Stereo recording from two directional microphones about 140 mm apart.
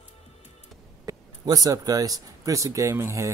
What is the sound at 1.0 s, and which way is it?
Speech, 25° right (ahead or behind).